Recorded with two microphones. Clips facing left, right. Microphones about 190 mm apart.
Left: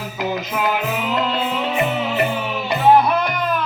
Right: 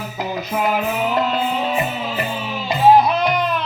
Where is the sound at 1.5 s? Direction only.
70° left (ahead or behind).